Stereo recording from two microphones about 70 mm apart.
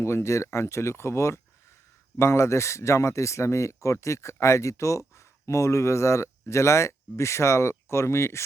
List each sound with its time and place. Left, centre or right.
0.0 s speech: left